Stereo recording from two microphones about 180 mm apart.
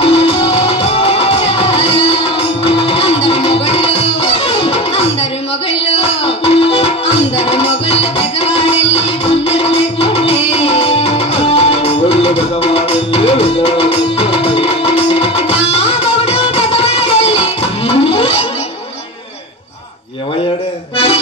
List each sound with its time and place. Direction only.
0.0 s music: 35° left (ahead or behind)